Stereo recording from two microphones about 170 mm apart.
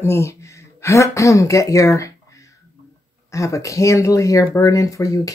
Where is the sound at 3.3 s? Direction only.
20° left (ahead or behind).